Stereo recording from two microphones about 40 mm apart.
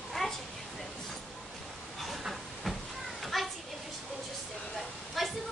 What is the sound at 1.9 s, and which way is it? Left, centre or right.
Children playing, centre.